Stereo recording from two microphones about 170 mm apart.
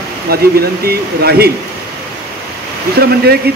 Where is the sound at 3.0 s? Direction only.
70° right (ahead or behind).